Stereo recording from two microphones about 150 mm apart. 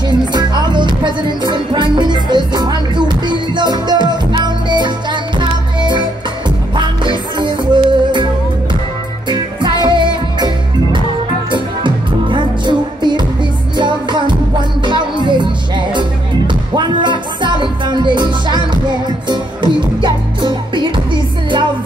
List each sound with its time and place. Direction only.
0.3 s music: 30° right (ahead or behind)
9.3 s music: 30° right (ahead or behind)